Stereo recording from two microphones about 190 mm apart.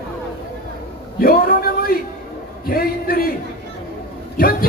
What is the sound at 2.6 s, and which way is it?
Speech, 50° left (ahead or behind).